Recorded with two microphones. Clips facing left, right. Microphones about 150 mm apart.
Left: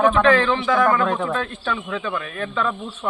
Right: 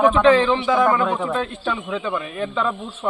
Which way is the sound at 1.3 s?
20° right (ahead or behind).